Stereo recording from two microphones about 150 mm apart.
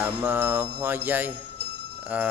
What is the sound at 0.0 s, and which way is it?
Mantra, 10° right (ahead or behind).